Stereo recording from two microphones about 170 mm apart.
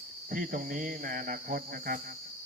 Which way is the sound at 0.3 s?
55° right (ahead or behind).